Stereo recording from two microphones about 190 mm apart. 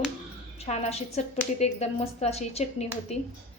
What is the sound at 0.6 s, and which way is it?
A woman's voice, 35° left (ahead or behind).